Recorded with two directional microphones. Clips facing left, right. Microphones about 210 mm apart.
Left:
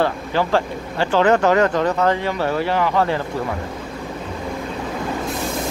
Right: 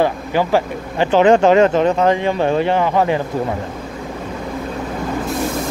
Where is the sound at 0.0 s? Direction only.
15° right (ahead or behind).